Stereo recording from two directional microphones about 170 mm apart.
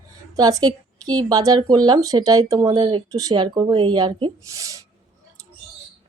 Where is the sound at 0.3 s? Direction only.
20° right (ahead or behind).